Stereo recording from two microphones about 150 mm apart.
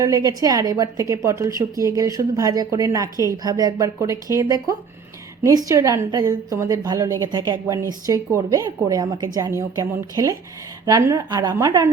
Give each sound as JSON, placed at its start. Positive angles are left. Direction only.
{"t": 0.0, "sound": "a woman's voice", "side_deg": -25}